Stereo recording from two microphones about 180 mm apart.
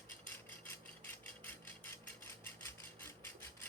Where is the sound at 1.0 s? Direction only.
10° left (ahead or behind).